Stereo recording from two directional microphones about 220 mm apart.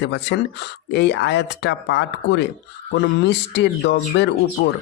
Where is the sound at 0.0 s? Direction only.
50° left (ahead or behind).